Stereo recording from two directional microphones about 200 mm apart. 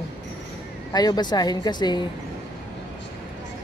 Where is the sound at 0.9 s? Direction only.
20° left (ahead or behind).